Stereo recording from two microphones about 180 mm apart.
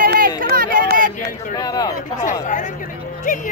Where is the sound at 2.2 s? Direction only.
45° left (ahead or behind).